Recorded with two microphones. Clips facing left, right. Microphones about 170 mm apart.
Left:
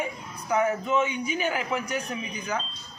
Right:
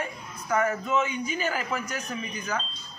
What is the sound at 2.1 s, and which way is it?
Speech, 5° left (ahead or behind).